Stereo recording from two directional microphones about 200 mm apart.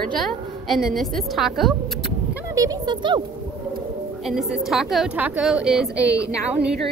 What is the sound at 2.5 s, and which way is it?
Speech, 15° right (ahead or behind).